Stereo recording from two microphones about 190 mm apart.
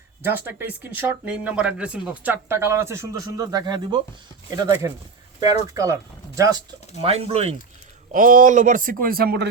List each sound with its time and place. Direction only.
0.2 s speech: 10° right (ahead or behind)
7.0 s speech: 30° right (ahead or behind)
8.1 s speech: 45° right (ahead or behind)